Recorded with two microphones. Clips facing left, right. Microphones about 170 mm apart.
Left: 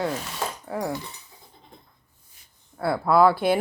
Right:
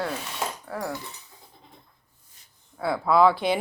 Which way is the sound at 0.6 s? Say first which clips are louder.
Left 3 dB; 15° left (ahead or behind).